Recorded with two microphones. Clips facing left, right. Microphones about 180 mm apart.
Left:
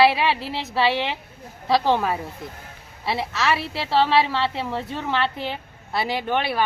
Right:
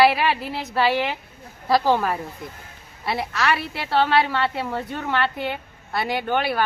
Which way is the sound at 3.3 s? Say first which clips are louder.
Even; centre (ahead or behind).